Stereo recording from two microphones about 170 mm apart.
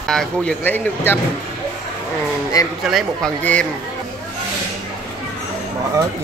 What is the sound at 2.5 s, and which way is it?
Speech, 20° left (ahead or behind).